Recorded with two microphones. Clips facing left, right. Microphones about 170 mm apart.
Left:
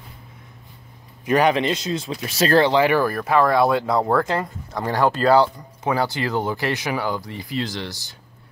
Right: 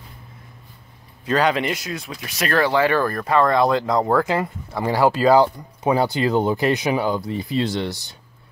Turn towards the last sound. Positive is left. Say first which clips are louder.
# right 5 dB
turn(degrees=-25)  # may be behind; listen again after turning